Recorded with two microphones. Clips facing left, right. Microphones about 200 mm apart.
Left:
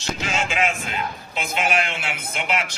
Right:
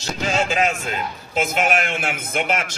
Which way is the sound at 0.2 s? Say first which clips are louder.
Right 5 dB; 40° right (ahead or behind).